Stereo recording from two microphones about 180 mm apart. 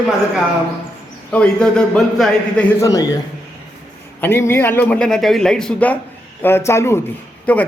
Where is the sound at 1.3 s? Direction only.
5° left (ahead or behind).